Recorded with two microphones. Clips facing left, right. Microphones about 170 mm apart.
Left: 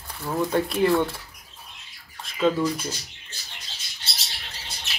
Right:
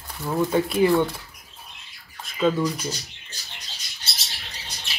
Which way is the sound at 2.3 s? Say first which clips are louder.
Even; centre (ahead or behind).